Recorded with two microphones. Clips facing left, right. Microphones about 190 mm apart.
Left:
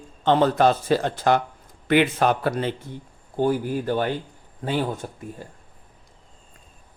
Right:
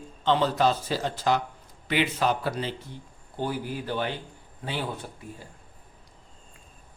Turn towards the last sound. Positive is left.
turn(degrees=45)  # may be behind; listen again after turning